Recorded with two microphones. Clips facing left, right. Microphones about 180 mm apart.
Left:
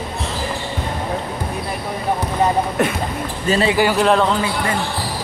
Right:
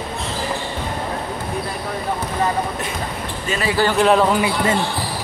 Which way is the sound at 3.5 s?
30° left (ahead or behind).